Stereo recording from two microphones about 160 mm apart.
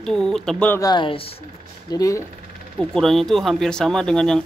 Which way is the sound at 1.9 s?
20° left (ahead or behind).